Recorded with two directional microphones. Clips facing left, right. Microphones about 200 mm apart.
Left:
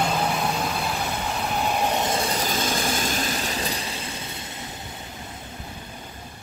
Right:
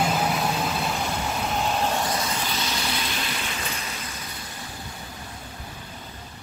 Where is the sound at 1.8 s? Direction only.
20° left (ahead or behind).